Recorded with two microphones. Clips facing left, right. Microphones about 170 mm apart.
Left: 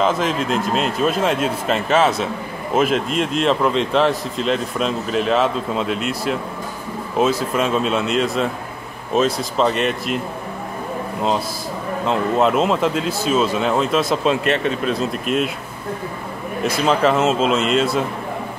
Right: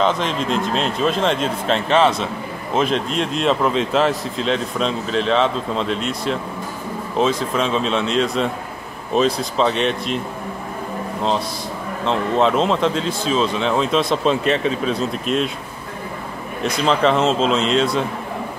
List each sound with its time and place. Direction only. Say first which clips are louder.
0.0 s speech: left 1 dB; 5° left (ahead or behind)
12.1 s speech: even; 5° left (ahead or behind)
16.6 s speech: even; 5° left (ahead or behind)